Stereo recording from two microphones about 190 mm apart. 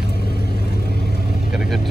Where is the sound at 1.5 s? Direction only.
5° right (ahead or behind).